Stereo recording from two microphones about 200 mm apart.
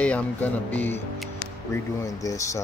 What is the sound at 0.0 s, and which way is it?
Speech, 5° left (ahead or behind).